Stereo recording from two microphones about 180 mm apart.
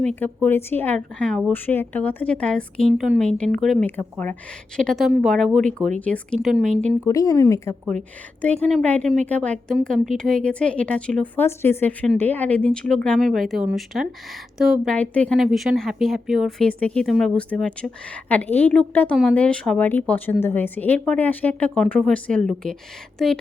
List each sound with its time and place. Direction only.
0.0 s speech: 5° left (ahead or behind)
6.8 s speech: 15° left (ahead or behind)